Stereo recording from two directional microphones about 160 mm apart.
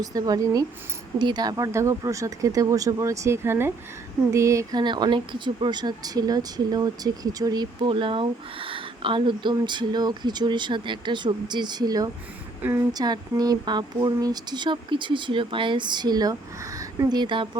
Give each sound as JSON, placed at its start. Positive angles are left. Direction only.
{"t": 0.0, "sound": "speech", "side_deg": -25}